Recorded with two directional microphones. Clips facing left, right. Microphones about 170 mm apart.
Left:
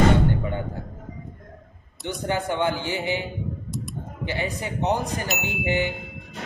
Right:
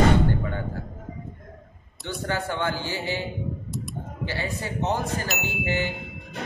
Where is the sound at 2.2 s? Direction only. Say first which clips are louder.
Left 3 dB; 20° left (ahead or behind).